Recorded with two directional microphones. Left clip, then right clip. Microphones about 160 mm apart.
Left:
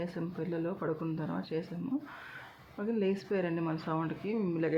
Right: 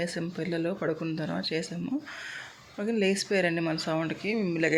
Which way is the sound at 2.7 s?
20° right (ahead or behind).